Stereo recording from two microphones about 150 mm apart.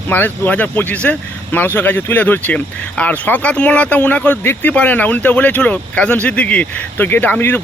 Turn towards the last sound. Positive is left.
turn(degrees=10)  # may be behind; listen again after turning